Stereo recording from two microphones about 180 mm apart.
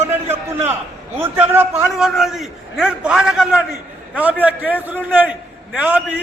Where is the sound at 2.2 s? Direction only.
Centre (ahead or behind).